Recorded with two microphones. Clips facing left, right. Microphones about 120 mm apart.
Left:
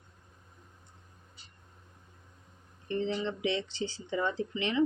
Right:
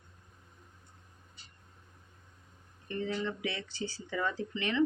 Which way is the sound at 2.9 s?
25° left (ahead or behind).